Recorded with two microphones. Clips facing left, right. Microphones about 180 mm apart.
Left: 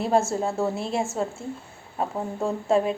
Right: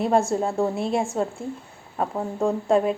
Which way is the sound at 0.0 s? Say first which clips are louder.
Right 2 dB; centre (ahead or behind).